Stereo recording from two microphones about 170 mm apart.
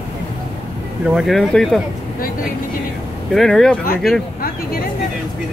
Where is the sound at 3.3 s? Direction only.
5° left (ahead or behind).